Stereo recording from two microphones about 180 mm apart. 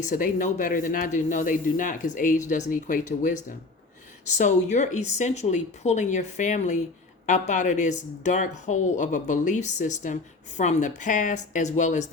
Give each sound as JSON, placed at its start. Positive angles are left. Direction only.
{"t": 0.0, "sound": "speech", "side_deg": 45}